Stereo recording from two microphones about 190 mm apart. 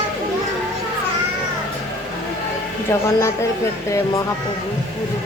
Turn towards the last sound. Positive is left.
turn(degrees=15)  # may be behind; listen again after turning